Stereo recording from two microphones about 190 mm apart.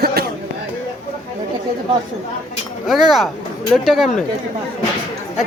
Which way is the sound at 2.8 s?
Centre (ahead or behind).